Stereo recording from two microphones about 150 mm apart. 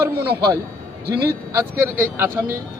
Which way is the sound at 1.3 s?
15° right (ahead or behind).